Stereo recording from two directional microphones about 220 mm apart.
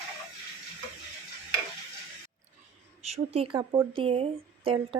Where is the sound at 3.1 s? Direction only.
25° right (ahead or behind).